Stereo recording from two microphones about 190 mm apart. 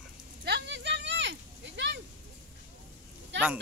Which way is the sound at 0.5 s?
65° right (ahead or behind).